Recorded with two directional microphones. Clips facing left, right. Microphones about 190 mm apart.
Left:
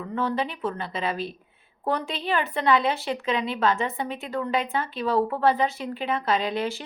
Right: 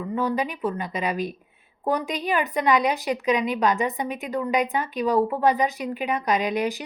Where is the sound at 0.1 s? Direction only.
15° right (ahead or behind).